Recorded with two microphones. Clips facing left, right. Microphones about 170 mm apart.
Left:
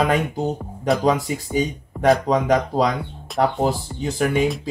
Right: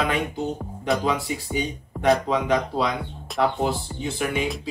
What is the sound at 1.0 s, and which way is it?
Speech, 40° left (ahead or behind).